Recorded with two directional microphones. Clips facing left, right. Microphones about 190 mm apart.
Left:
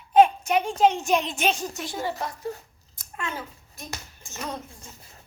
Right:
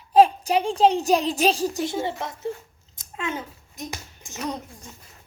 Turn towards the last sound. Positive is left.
turn(degrees=-15)  # may be behind; listen again after turning